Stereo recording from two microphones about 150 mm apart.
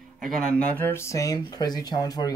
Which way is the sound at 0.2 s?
5° left (ahead or behind).